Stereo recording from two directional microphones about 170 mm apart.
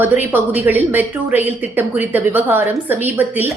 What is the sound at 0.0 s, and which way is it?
A woman's voice, 10° right (ahead or behind).